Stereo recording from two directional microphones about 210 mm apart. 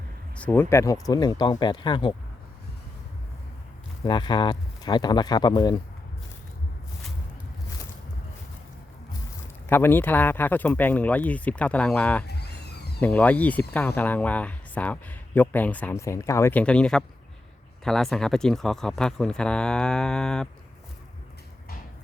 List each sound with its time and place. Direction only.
0.3 s speech: 10° left (ahead or behind)
4.0 s speech: 20° left (ahead or behind)
9.6 s speech: 10° left (ahead or behind)
12.3 s a sound: 50° left (ahead or behind)
13.0 s speech: 5° left (ahead or behind)